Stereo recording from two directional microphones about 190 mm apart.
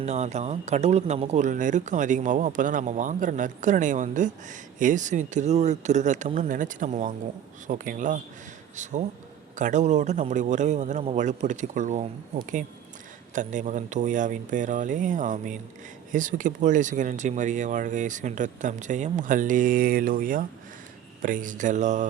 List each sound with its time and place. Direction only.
0.0 s speech: 35° right (ahead or behind)
13.3 s speech: 40° right (ahead or behind)